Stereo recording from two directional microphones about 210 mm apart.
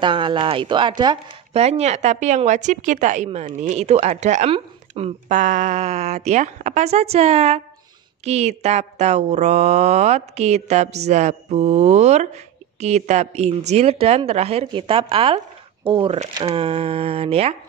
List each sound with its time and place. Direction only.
0.0 s speech: 25° right (ahead or behind)